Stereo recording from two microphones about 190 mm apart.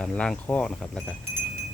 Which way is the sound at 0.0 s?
5° left (ahead or behind).